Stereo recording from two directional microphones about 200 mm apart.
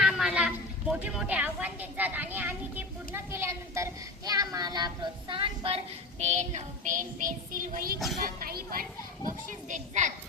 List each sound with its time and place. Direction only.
0.0 s a woman's voice: 5° right (ahead or behind)
4.3 s child singing: 20° right (ahead or behind); by 7.9 s 45° right (ahead or behind)
8.2 s speech: 45° right (ahead or behind)
9.5 s child singing: 40° right (ahead or behind)